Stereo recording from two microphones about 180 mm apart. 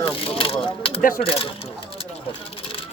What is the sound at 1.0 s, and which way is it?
Speech, 50° left (ahead or behind).